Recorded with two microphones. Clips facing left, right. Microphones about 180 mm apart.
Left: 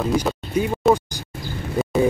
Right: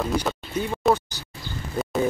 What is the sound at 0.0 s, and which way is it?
Speech, 5° left (ahead or behind).